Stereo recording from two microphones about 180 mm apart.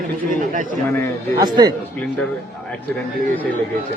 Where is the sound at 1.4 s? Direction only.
20° right (ahead or behind).